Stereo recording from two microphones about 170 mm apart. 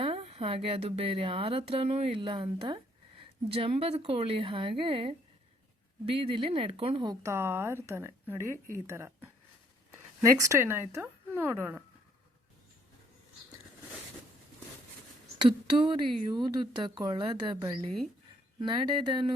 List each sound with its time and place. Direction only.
0.0 s speech: 35° right (ahead or behind); by 11.8 s 10° right (ahead or behind)
15.4 s speech: 30° right (ahead or behind)